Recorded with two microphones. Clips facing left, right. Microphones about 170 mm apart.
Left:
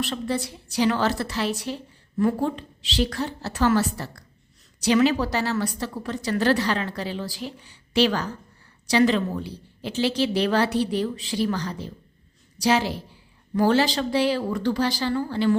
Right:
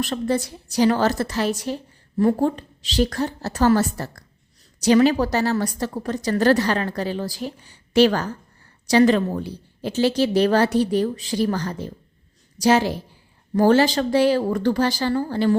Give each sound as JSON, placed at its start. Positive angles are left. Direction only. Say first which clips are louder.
{"t": 0.0, "sound": "a woman's voice", "louder": "right 4 dB", "side_deg": -45}